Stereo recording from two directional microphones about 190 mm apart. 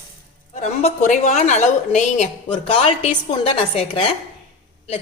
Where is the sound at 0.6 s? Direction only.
40° left (ahead or behind).